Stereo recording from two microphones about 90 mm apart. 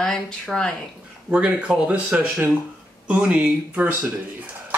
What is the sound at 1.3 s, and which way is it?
Speech, 10° right (ahead or behind).